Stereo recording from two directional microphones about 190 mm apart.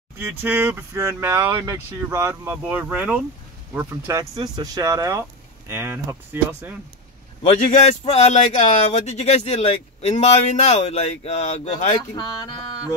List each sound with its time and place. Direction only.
0.2 s speech: 10° right (ahead or behind)
7.4 s speech: 35° left (ahead or behind)